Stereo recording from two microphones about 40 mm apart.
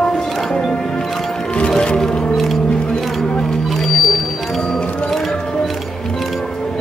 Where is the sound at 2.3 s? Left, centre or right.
Centre.